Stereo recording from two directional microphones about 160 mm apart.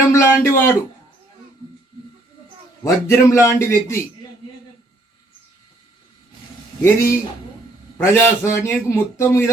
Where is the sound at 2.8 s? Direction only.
15° left (ahead or behind).